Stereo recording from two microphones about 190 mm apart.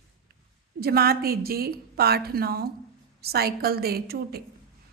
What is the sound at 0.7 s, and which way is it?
A woman's voice, 55° right (ahead or behind).